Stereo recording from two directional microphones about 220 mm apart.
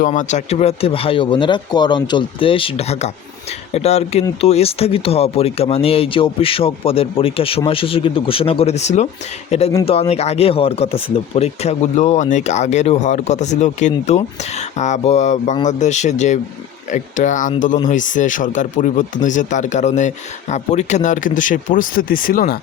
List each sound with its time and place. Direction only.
0.0 s speech: 35° left (ahead or behind)